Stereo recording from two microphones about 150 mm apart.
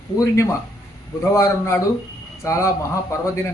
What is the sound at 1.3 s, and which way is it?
A man's voice, 20° left (ahead or behind).